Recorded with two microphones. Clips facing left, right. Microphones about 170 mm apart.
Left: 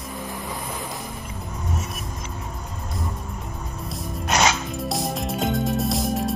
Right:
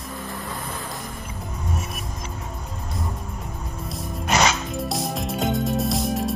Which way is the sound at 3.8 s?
Centre (ahead or behind).